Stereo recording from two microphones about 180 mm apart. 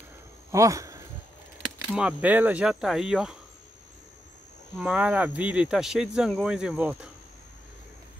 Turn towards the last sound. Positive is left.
turn(degrees=-5)  # may be behind; listen again after turning